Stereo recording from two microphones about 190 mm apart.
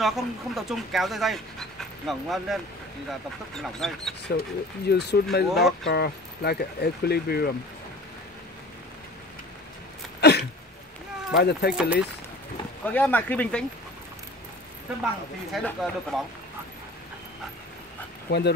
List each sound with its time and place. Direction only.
0.0 s speech: centre (ahead or behind)
3.6 s speech: centre (ahead or behind)
4.3 s speech: 60° left (ahead or behind)
5.5 s speech: centre (ahead or behind)
5.9 s speech: 60° left (ahead or behind)
10.2 s a sound: 60° left (ahead or behind)
11.3 s speech: 60° left (ahead or behind)
11.7 s speech: 5° right (ahead or behind)
12.8 s speech: 10° left (ahead or behind)
15.5 s speech: centre (ahead or behind)